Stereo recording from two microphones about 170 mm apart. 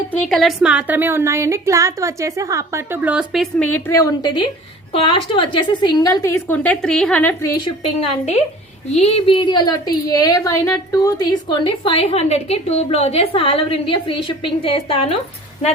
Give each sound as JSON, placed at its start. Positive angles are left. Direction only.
{"t": 0.1, "sound": "a woman's voice", "side_deg": 5}
{"t": 7.5, "sound": "a woman's voice", "side_deg": 25}